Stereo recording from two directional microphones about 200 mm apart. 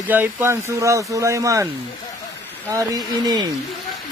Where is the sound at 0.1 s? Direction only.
10° right (ahead or behind).